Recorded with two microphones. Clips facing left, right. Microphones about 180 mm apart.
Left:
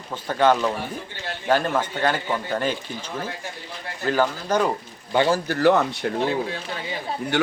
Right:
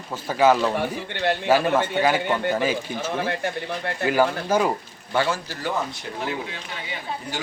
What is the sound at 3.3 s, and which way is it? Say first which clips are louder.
Speech: right 8 dB; 70° right (ahead or behind).